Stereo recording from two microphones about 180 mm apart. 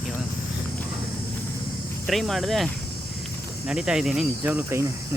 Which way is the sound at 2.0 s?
Centre (ahead or behind).